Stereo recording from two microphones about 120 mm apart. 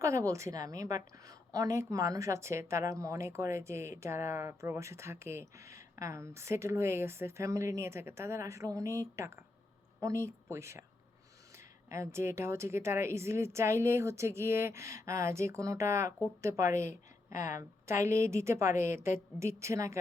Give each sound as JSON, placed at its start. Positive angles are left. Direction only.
{"t": 0.0, "sound": "a woman's voice", "side_deg": -25}